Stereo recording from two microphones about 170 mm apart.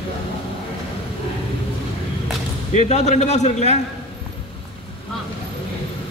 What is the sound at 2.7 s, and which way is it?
A man's voice, 40° left (ahead or behind).